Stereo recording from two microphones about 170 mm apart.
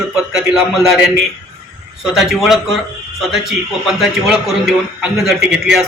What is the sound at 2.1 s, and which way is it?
A man's voice, centre (ahead or behind).